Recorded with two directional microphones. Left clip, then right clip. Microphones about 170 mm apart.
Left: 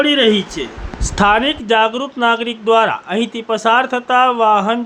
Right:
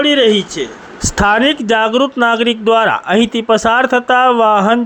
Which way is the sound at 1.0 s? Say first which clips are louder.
Right 2 dB; 40° right (ahead or behind).